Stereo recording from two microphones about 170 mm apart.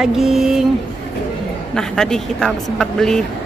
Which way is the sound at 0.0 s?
Centre (ahead or behind).